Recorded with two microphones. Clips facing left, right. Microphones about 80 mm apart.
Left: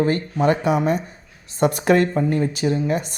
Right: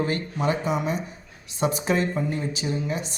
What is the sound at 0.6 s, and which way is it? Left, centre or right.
Speech, left.